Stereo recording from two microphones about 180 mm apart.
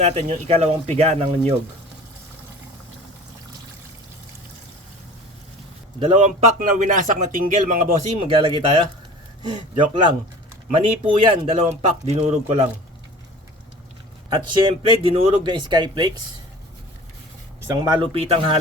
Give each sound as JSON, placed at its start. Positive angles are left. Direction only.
{"t": 0.0, "sound": "speech", "side_deg": -35}
{"t": 6.0, "sound": "a man's voice", "side_deg": -35}
{"t": 8.3, "sound": "a man's voice", "side_deg": -25}
{"t": 11.3, "sound": "speech", "side_deg": -35}
{"t": 14.3, "sound": "a man's voice", "side_deg": -25}
{"t": 17.7, "sound": "a man's voice", "side_deg": -25}